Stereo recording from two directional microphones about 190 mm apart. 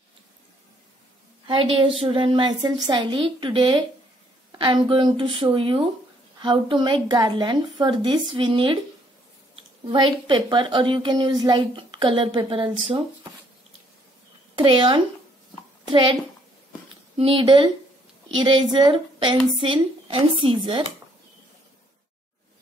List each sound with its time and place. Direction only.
1.5 s a woman's voice: 25° right (ahead or behind)
9.9 s a woman's voice: 25° right (ahead or behind)
14.5 s a woman's voice: 25° right (ahead or behind)
17.2 s a woman's voice: 25° right (ahead or behind)